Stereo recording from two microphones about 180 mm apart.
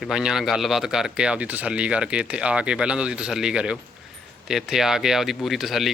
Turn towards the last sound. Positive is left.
turn(degrees=0)  # may be behind; listen again after turning